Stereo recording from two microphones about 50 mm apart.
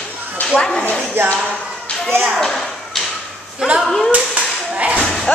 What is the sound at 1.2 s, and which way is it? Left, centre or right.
Music, right.